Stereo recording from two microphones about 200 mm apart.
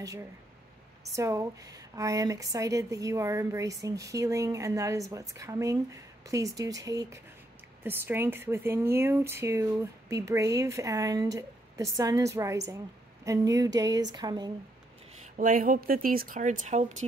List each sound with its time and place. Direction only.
0.0 s speech: 15° right (ahead or behind)
15.3 s speech: 40° right (ahead or behind)